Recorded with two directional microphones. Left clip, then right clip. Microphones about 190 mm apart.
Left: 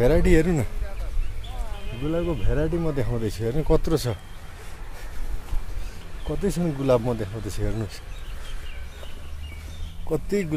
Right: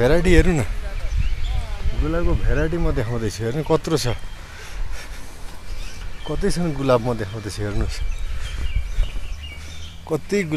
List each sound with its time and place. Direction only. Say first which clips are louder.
0.0 s speech: right 3 dB; 15° right (ahead or behind)
2.0 s speech: right 2 dB; 20° right (ahead or behind)
6.2 s speech: right 3 dB; 10° right (ahead or behind)
10.0 s speech: right 3 dB; 20° right (ahead or behind)